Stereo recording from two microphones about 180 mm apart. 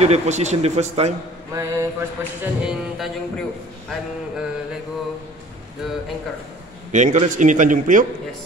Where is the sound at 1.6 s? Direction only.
15° right (ahead or behind).